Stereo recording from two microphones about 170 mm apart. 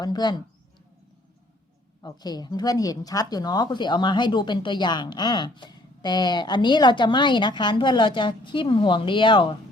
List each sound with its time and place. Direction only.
0.0 s speech: 25° left (ahead or behind)
2.0 s speech: 25° left (ahead or behind)